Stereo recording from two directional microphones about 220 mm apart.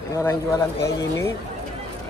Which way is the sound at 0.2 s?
15° left (ahead or behind).